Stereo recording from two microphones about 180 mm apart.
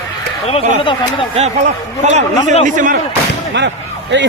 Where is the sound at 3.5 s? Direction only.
80° right.